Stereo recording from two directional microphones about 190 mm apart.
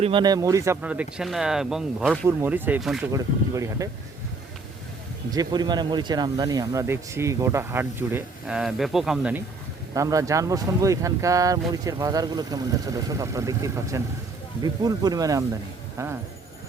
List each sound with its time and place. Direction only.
0.0 s speech: 25° right (ahead or behind); by 3.0 s 5° right (ahead or behind)
3.1 s speech: 15° right (ahead or behind)
5.3 s speech: 20° right (ahead or behind); by 9.4 s 5° right (ahead or behind)
9.9 s speech: 15° right (ahead or behind)